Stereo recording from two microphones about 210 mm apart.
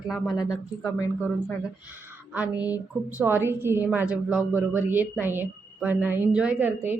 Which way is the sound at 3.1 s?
10° right (ahead or behind).